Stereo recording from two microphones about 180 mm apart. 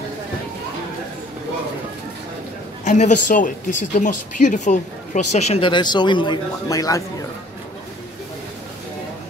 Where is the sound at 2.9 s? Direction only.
40° left (ahead or behind); by 7.0 s 20° left (ahead or behind).